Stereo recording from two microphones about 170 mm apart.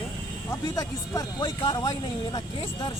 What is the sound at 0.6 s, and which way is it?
Speech, 20° left (ahead or behind).